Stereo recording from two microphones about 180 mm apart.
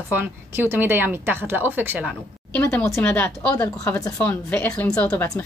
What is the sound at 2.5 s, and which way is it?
Speech, 15° left (ahead or behind).